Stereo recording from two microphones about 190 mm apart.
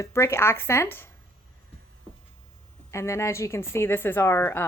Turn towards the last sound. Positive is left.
turn(degrees=15)  # may be behind; listen again after turning